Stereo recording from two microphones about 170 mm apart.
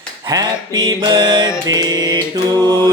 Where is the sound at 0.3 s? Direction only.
20° right (ahead or behind).